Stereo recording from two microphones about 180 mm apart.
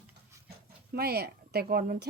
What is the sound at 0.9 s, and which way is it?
Speech, 60° right (ahead or behind).